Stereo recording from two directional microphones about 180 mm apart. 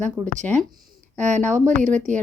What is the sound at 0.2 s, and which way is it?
Speech, 5° right (ahead or behind).